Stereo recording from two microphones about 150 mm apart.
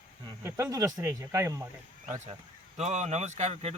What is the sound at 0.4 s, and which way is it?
Speech, 20° right (ahead or behind).